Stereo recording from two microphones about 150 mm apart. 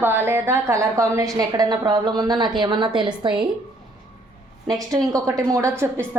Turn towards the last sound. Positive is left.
turn(degrees=-15)  # may be behind; listen again after turning